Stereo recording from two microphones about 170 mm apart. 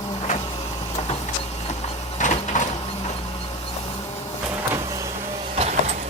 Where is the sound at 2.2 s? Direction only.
45° left (ahead or behind).